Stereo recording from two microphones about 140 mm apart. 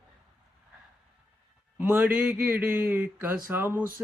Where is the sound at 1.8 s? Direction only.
15° right (ahead or behind).